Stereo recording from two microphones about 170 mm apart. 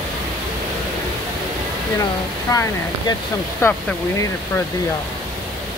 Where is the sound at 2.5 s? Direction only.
20° left (ahead or behind).